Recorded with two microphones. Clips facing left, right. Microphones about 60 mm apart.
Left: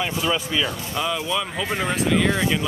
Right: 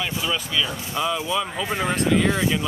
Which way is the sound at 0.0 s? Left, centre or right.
Centre.